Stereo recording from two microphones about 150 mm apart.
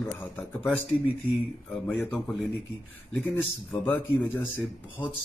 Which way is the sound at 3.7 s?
10° left (ahead or behind).